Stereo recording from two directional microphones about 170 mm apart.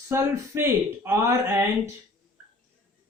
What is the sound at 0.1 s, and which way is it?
Speech, 15° right (ahead or behind).